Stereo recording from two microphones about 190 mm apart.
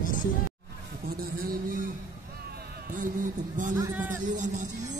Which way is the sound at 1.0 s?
50° right (ahead or behind).